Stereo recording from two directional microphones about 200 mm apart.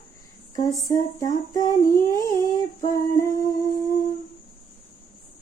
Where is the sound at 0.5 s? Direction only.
15° left (ahead or behind).